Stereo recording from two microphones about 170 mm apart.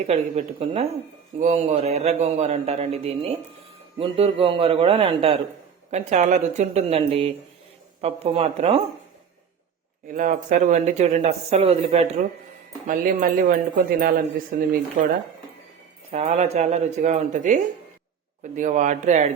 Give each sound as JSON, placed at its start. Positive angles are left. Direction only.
{"t": 0.1, "sound": "speech", "side_deg": -40}
{"t": 10.1, "sound": "speech", "side_deg": -50}
{"t": 12.9, "sound": "speech", "side_deg": -55}
{"t": 16.1, "sound": "speech", "side_deg": -40}